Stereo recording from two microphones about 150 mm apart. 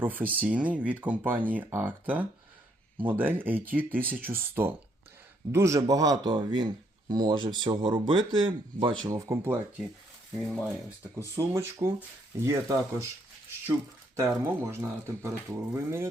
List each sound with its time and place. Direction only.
0.0 s speech: 10° right (ahead or behind); by 9.0 s 30° right (ahead or behind)
9.0 s speech: 20° right (ahead or behind)
11.3 s speech: 20° right (ahead or behind)
14.2 s speech: 15° right (ahead or behind)